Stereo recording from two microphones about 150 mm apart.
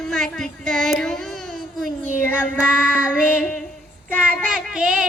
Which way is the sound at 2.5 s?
5° right (ahead or behind).